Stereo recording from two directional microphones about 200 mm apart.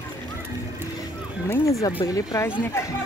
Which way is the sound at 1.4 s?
15° left (ahead or behind).